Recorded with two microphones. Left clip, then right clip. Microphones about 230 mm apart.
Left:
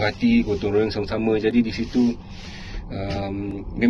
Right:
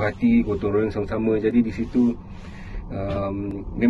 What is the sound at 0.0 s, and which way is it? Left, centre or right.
A man's voice, centre.